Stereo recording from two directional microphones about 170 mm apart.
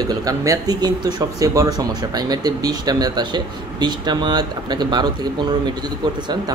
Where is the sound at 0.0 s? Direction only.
20° right (ahead or behind).